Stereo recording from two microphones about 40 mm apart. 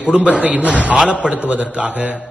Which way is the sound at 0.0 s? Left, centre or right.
Right.